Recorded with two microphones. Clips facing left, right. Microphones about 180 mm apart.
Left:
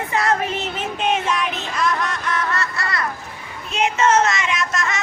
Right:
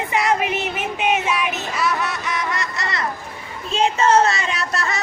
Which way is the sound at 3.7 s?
30° right (ahead or behind).